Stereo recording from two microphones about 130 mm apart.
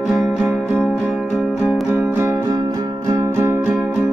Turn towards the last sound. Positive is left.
turn(degrees=-10)  # may be behind; listen again after turning